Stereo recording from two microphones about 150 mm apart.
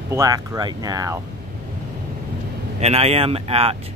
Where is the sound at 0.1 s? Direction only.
25° right (ahead or behind).